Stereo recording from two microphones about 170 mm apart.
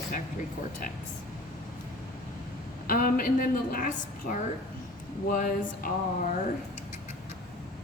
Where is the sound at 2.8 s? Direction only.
55° left (ahead or behind).